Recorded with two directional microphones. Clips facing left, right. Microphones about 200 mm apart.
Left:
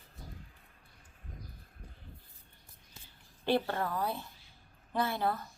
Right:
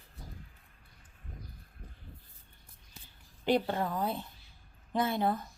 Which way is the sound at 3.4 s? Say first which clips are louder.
Right 2 dB; 15° right (ahead or behind).